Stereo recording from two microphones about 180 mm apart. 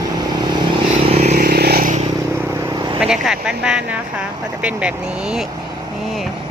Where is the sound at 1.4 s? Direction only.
60° right (ahead or behind).